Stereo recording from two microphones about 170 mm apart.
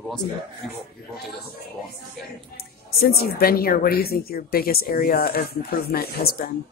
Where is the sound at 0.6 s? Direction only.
Centre (ahead or behind).